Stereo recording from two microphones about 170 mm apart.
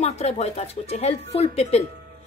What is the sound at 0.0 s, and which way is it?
Speech, 40° left (ahead or behind).